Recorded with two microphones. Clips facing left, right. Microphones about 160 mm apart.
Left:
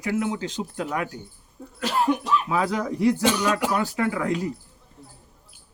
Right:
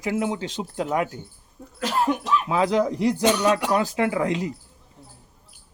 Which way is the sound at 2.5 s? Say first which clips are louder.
Right 4 dB; 20° right (ahead or behind).